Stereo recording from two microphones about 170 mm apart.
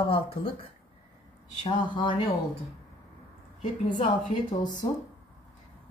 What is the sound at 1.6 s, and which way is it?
Speech, 25° left (ahead or behind).